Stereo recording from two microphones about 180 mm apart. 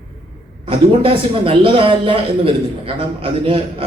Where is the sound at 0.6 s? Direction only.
30° right (ahead or behind).